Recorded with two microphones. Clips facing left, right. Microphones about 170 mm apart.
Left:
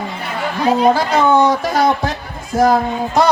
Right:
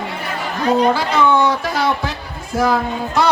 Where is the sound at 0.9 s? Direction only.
45° left (ahead or behind).